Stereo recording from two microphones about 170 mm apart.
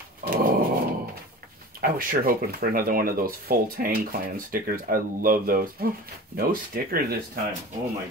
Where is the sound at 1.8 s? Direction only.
55° right (ahead or behind).